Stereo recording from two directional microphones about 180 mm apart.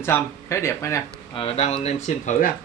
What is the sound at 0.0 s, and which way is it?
Speech, 15° left (ahead or behind).